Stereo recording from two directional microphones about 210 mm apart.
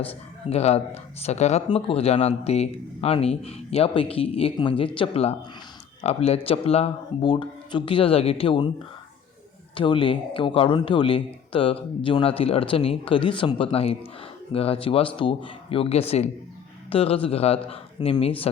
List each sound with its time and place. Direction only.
0.1 s speech: 30° left (ahead or behind)
9.7 s speech: 25° left (ahead or behind)